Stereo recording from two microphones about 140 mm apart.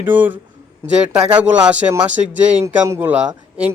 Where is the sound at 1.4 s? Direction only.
10° right (ahead or behind).